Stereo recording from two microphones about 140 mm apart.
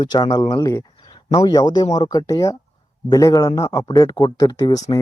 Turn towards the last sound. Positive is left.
turn(degrees=25)  # may be behind; listen again after turning